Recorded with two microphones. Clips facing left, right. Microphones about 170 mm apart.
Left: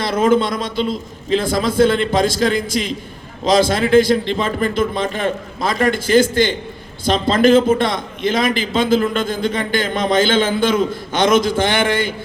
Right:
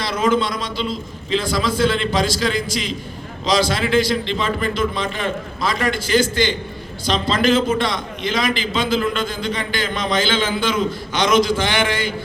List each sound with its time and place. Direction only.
0.0 s a man's voice: 50° left (ahead or behind)